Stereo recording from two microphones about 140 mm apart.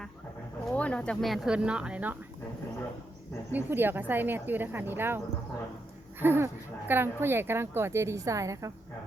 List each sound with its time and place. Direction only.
0.7 s speech: 10° left (ahead or behind); by 2.1 s 10° right (ahead or behind)
3.5 s speech: 15° right (ahead or behind)